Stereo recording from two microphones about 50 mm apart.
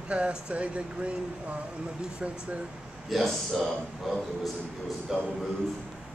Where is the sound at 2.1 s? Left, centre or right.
Right.